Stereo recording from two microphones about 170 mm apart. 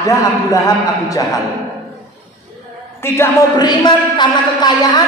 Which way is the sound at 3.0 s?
15° left (ahead or behind).